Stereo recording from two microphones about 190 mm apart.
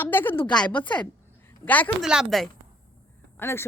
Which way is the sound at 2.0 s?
Centre (ahead or behind).